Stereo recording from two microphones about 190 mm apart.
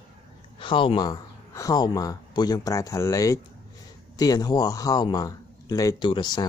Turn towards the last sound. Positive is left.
turn(degrees=20)  # may be behind; listen again after turning